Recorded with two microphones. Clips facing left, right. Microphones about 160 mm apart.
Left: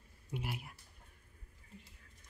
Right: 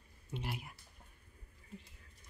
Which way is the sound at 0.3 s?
5° left (ahead or behind).